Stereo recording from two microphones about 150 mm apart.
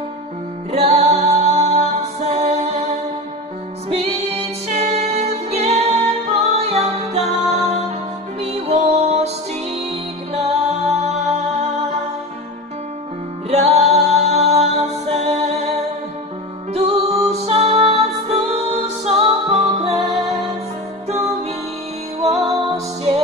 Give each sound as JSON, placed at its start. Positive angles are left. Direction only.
{"t": 0.7, "sound": "music", "side_deg": -45}
{"t": 3.9, "sound": "music", "side_deg": -45}
{"t": 10.3, "sound": "music", "side_deg": -45}
{"t": 13.5, "sound": "music", "side_deg": -45}
{"t": 16.7, "sound": "music", "side_deg": -45}
{"t": 22.2, "sound": "music", "side_deg": -45}